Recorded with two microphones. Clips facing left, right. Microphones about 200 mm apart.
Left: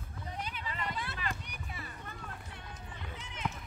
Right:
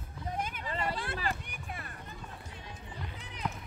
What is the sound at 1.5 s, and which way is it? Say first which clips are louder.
Run: right 2 dB; 55° right (ahead or behind).